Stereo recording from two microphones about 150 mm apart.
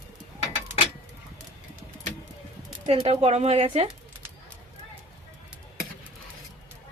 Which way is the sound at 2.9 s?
40° right (ahead or behind).